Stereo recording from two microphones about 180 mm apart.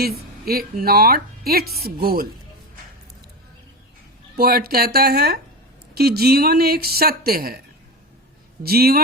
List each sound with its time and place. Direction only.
0.0 s a woman's voice: 55° right (ahead or behind)
4.4 s a woman's voice: 60° right (ahead or behind)
8.6 s a woman's voice: 60° right (ahead or behind)